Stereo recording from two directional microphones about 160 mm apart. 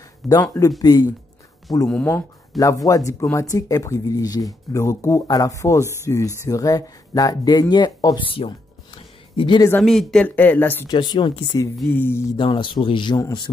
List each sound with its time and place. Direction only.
0.3 s speech: 20° left (ahead or behind)
1.9 s speech: 10° left (ahead or behind)
2.6 s speech: 20° left (ahead or behind)
8.4 s music: 35° left (ahead or behind)
9.7 s speech: 5° left (ahead or behind)
10.9 s speech: 25° left (ahead or behind)
11.9 s speech: 15° left (ahead or behind)
12.4 s a man's voice: 30° left (ahead or behind)